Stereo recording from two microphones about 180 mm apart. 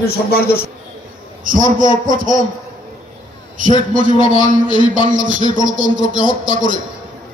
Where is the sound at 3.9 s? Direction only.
45° right (ahead or behind).